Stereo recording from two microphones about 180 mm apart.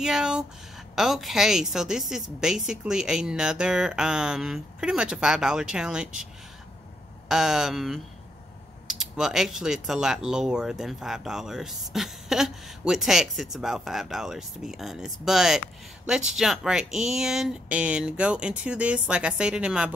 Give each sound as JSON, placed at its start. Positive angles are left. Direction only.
{"t": 0.0, "sound": "speech", "side_deg": -5}
{"t": 7.2, "sound": "speech", "side_deg": 0}